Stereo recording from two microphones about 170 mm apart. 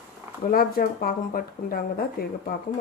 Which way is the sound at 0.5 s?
60° left (ahead or behind).